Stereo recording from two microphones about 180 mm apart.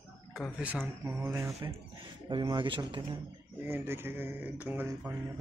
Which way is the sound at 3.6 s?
15° right (ahead or behind).